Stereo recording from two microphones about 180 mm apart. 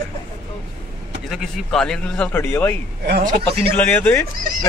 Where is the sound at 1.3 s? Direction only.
Centre (ahead or behind).